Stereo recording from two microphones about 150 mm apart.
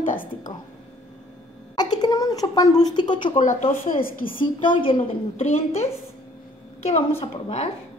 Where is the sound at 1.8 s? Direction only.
25° left (ahead or behind).